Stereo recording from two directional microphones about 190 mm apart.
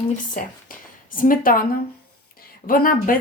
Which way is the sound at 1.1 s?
45° left (ahead or behind).